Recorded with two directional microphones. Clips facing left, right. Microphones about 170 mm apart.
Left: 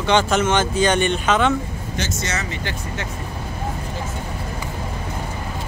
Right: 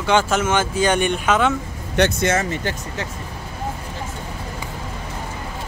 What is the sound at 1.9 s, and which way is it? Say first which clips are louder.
Speech: right 9 dB; 60° right (ahead or behind).